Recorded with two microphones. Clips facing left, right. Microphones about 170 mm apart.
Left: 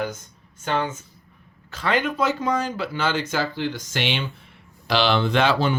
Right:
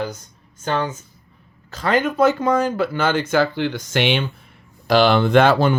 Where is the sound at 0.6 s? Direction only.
40° right (ahead or behind).